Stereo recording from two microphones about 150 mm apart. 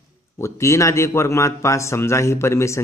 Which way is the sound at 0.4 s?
20° left (ahead or behind).